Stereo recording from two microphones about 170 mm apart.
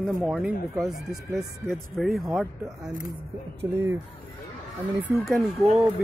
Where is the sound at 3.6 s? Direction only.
10° right (ahead or behind).